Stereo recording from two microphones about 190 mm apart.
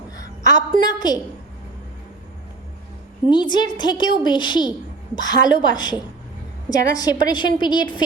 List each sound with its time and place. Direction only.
0.2 s a woman's voice: 20° left (ahead or behind)
3.2 s a woman's voice: 25° left (ahead or behind)